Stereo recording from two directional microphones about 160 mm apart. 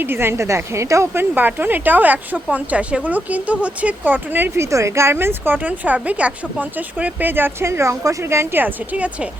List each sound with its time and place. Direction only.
0.0 s a woman's voice: 15° right (ahead or behind)